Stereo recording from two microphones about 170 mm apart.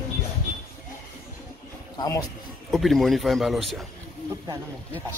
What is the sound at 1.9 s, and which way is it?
Speech, 20° left (ahead or behind).